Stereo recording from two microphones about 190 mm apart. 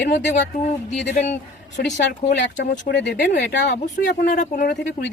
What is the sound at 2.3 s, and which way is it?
Speech, 65° left (ahead or behind).